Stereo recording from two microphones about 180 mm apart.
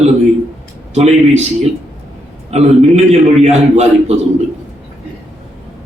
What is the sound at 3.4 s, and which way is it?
Speech, 35° right (ahead or behind).